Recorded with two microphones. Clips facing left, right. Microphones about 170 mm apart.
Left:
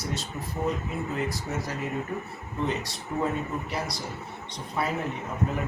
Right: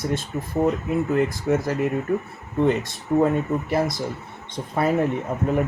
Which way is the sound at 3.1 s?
50° right (ahead or behind).